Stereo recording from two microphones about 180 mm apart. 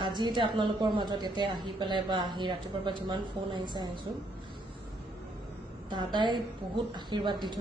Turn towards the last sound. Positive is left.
turn(degrees=-25)  # may be behind; listen again after turning